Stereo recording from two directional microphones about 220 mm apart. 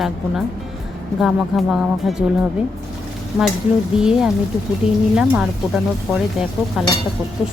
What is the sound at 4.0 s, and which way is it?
A woman's voice, centre (ahead or behind).